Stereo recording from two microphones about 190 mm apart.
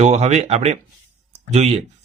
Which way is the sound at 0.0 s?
35° right (ahead or behind).